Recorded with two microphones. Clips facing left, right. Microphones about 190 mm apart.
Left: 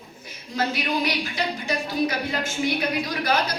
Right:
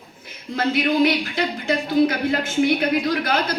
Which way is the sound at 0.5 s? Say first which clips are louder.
Right 6 dB; 55° right (ahead or behind).